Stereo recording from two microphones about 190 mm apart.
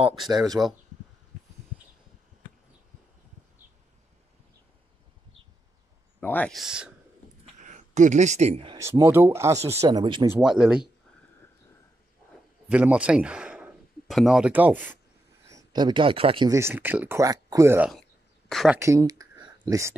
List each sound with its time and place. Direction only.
0.5 s speech: centre (ahead or behind)
6.2 s speech: 10° left (ahead or behind)
7.6 s speech: 40° right (ahead or behind)
8.7 s speech: 15° right (ahead or behind)
10.4 s speech: 5° right (ahead or behind)
12.6 s speech: 5° right (ahead or behind); by 16.5 s 25° right (ahead or behind)
16.5 s speech: 10° right (ahead or behind)
18.8 s speech: 15° right (ahead or behind)